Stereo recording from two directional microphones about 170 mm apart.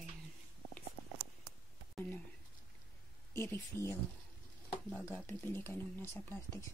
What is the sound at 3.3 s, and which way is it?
Speech, 15° left (ahead or behind).